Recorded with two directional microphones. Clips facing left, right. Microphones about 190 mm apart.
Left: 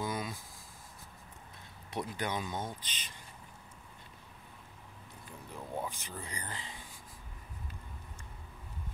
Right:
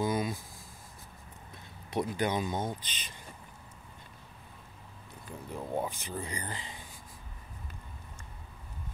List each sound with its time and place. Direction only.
0.0 s a sound: 20° right (ahead or behind)
2.0 s speech: 20° right (ahead or behind)
5.6 s speech: 25° right (ahead or behind)